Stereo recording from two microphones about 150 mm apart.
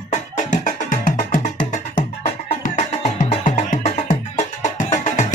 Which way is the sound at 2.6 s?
55° left (ahead or behind).